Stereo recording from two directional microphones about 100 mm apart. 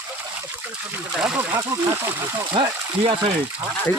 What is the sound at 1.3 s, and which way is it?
Speech, 20° right (ahead or behind).